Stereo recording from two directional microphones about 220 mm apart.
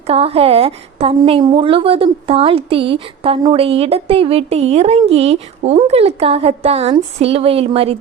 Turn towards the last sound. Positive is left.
turn(degrees=-25)  # may be behind; listen again after turning